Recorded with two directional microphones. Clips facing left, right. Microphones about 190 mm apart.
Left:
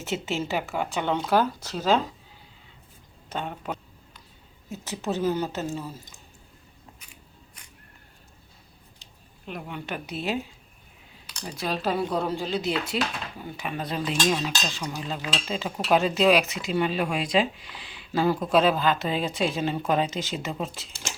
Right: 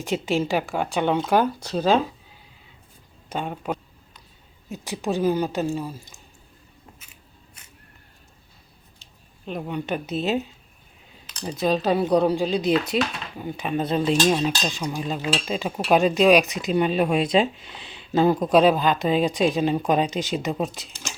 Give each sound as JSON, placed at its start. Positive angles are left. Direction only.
{"t": 0.0, "sound": "speech", "side_deg": -15}
{"t": 3.2, "sound": "a sound", "side_deg": -15}
{"t": 4.7, "sound": "speech", "side_deg": -15}
{"t": 9.5, "sound": "speech", "side_deg": -20}
{"t": 14.4, "sound": "speech", "side_deg": -15}